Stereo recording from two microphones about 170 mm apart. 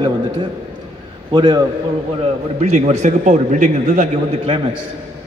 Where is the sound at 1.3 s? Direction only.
25° right (ahead or behind).